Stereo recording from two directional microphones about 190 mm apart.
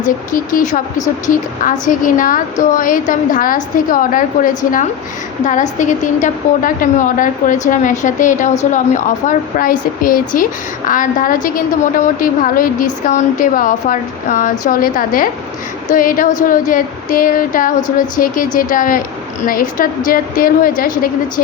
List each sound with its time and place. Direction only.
0.0 s a woman's voice: 45° left (ahead or behind)